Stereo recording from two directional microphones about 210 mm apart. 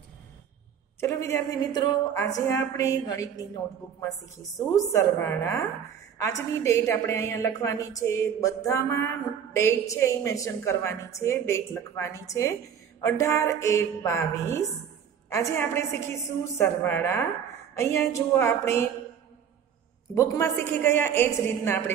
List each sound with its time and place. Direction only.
1.0 s a woman's voice: 10° left (ahead or behind)
4.6 s a woman's voice: 15° left (ahead or behind)
20.2 s a woman's voice: 15° left (ahead or behind)